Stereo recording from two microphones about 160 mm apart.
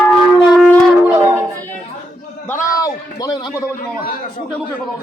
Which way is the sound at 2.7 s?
20° left (ahead or behind).